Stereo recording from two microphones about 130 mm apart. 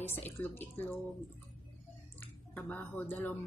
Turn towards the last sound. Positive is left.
turn(degrees=15)  # may be behind; listen again after turning